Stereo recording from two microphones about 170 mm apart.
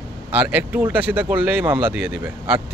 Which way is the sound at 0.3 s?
10° right (ahead or behind).